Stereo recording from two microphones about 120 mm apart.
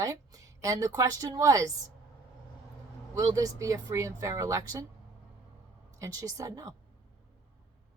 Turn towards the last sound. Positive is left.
turn(degrees=-30)  # may be behind; listen again after turning